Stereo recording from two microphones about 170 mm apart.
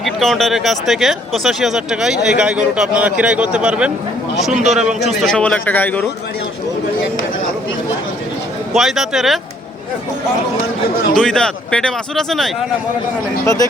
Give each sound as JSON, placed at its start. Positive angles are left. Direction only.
{"t": 0.0, "sound": "speech", "side_deg": 0}
{"t": 8.7, "sound": "speech", "side_deg": 0}
{"t": 11.1, "sound": "speech", "side_deg": 5}
{"t": 13.4, "sound": "speech", "side_deg": 20}